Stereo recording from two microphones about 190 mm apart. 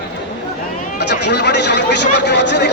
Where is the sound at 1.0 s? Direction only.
60° left (ahead or behind).